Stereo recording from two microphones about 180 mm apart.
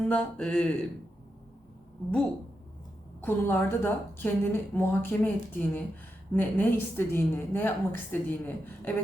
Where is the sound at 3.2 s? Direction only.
10° left (ahead or behind).